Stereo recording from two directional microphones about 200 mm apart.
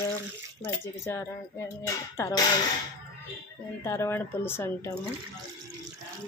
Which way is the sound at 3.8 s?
10° left (ahead or behind).